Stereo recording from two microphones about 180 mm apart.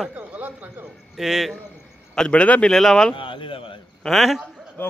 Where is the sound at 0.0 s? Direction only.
5° right (ahead or behind).